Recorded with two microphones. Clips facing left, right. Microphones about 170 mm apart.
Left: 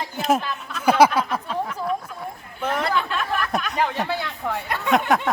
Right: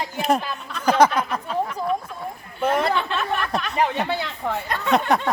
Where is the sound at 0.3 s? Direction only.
5° left (ahead or behind).